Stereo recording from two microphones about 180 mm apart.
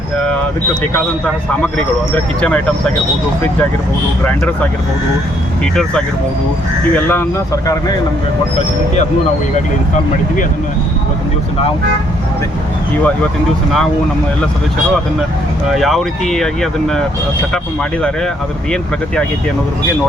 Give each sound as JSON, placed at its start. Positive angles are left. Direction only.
{"t": 2.1, "sound": "speech", "side_deg": 5}
{"t": 6.9, "sound": "speech", "side_deg": 10}
{"t": 15.7, "sound": "speech", "side_deg": 0}